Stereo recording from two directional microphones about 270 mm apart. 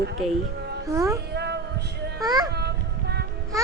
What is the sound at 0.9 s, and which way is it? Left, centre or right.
Speech, centre.